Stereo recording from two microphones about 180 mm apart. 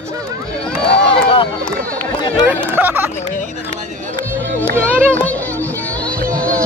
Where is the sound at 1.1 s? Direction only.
30° left (ahead or behind).